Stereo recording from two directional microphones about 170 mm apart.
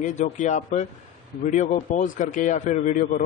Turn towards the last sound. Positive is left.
turn(degrees=50)  # may be behind; listen again after turning